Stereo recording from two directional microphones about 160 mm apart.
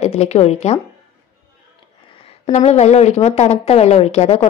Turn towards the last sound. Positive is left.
turn(degrees=40)  # may be behind; listen again after turning